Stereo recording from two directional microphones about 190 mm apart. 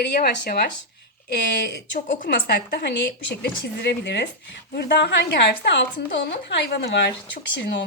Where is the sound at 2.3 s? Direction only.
60° left (ahead or behind).